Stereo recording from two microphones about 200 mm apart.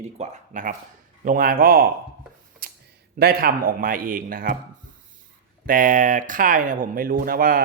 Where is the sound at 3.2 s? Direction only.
50° right (ahead or behind).